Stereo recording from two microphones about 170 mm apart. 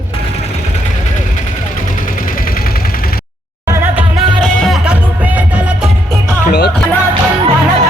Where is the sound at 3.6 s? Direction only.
15° right (ahead or behind).